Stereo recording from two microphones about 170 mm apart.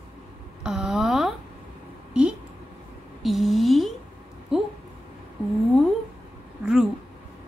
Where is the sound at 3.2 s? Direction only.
Centre (ahead or behind).